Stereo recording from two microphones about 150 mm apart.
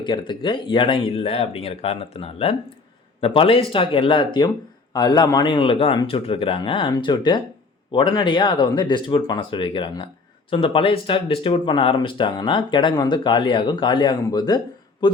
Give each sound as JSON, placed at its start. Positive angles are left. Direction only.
{"t": 0.0, "sound": "speech", "side_deg": 30}